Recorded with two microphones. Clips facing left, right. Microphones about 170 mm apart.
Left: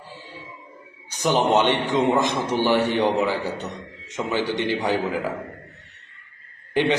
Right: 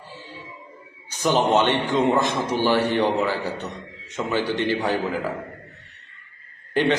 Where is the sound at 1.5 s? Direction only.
15° left (ahead or behind).